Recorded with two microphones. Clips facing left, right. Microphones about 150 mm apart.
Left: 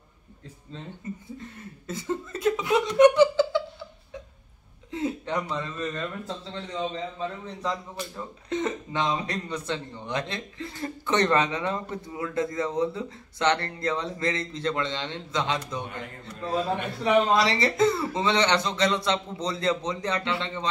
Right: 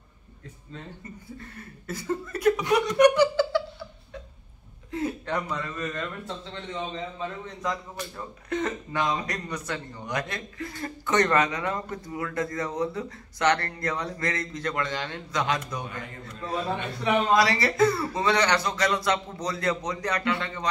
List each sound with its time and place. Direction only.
1.9 s speech: 25° left (ahead or behind)
4.9 s a man's voice: 20° left (ahead or behind)